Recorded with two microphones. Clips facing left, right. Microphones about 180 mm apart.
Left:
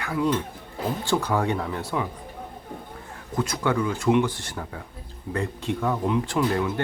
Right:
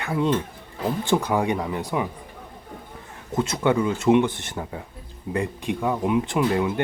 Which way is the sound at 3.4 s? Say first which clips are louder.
Right 3 dB; 25° right (ahead or behind).